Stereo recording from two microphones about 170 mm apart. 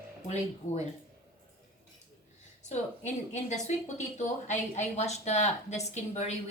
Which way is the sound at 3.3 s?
40° left (ahead or behind).